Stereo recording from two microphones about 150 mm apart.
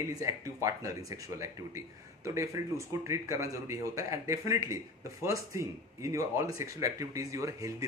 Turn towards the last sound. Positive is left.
turn(degrees=-20)  # may be behind; listen again after turning